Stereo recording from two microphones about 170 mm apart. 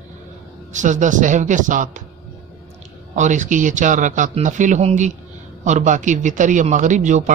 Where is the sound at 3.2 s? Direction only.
45° right (ahead or behind).